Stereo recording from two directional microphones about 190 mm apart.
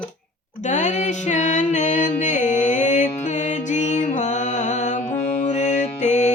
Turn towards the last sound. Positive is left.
turn(degrees=40)  # may be behind; listen again after turning